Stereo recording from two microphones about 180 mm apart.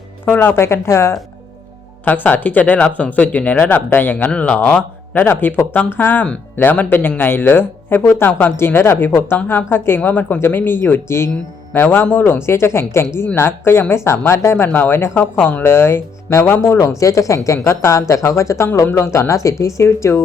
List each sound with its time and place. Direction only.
0.3 s speech: 10° left (ahead or behind)